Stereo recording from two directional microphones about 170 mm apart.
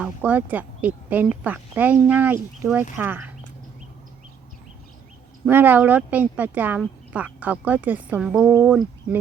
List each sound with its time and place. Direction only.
0.0 s speech: 10° right (ahead or behind)
5.5 s speech: 10° right (ahead or behind)